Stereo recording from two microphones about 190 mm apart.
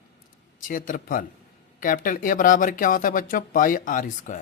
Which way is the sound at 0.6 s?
45° left (ahead or behind).